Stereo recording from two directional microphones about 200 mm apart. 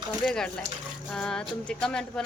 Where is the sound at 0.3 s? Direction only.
5° left (ahead or behind).